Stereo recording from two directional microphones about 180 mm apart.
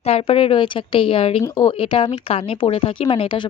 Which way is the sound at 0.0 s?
35° left (ahead or behind).